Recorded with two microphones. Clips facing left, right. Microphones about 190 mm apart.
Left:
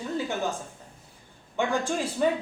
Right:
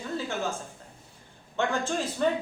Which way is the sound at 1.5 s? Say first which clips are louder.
Left 1 dB; 10° left (ahead or behind).